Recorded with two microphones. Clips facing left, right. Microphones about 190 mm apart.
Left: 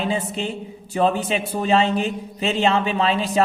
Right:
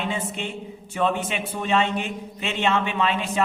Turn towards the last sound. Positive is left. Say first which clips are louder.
# left 4 dB
turn(degrees=35)  # may be behind; listen again after turning